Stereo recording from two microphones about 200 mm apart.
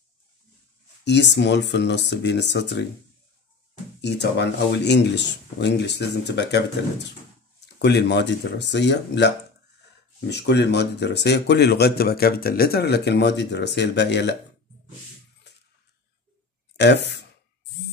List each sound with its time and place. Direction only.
1.0 s speech: 60° left (ahead or behind)
4.0 s speech: 60° left (ahead or behind)
10.3 s speech: 55° left (ahead or behind)
16.7 s speech: 60° left (ahead or behind)